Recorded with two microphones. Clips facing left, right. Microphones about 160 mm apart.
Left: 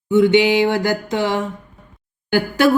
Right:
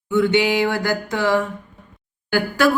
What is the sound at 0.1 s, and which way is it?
A woman's voice, 20° left (ahead or behind).